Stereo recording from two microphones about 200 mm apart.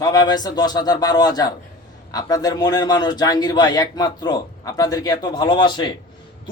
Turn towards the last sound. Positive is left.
turn(degrees=25)  # may be behind; listen again after turning